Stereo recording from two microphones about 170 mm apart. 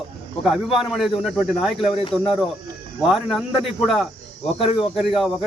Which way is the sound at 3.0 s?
Centre (ahead or behind).